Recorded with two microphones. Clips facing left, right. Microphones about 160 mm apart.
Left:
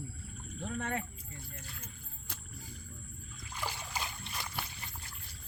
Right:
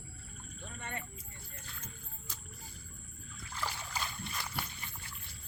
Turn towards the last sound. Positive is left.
turn(degrees=15)  # may be behind; listen again after turning